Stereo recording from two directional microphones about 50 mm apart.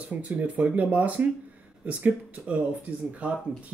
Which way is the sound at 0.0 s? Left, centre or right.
Right.